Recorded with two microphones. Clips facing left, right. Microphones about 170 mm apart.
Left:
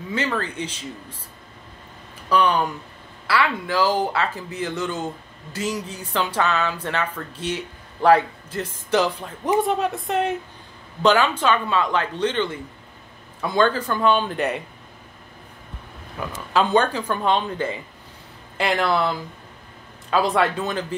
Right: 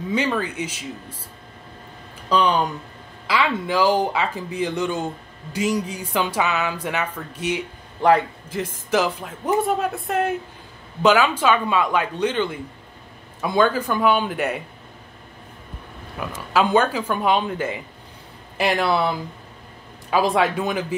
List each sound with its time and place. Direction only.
0.1 s speech: 15° right (ahead or behind)
2.2 s speech: 20° right (ahead or behind)
16.2 s speech: 5° right (ahead or behind)